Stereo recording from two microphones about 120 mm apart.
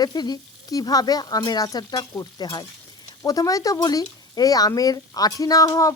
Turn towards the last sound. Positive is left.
turn(degrees=30)  # may be behind; listen again after turning